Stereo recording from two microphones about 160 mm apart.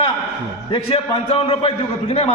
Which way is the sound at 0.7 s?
35° left (ahead or behind).